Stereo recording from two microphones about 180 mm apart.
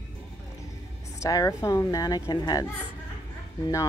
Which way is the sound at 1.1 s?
20° left (ahead or behind).